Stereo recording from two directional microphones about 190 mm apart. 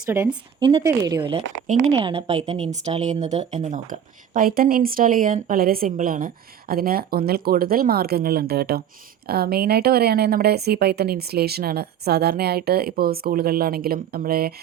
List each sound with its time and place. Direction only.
0.1 s speech: 10° right (ahead or behind)
0.6 s a woman's voice: 20° right (ahead or behind); by 14.5 s 55° right (ahead or behind)